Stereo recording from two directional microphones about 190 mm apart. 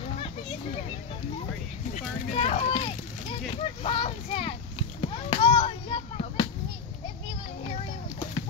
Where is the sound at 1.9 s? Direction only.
35° left (ahead or behind).